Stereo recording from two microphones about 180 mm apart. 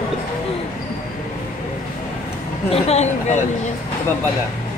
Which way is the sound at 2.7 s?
35° left (ahead or behind).